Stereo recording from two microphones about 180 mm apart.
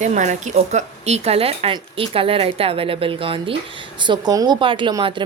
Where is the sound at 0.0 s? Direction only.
40° right (ahead or behind).